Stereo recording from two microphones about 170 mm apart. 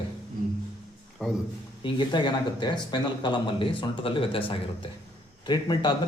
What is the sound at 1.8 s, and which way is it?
Speech, 30° left (ahead or behind).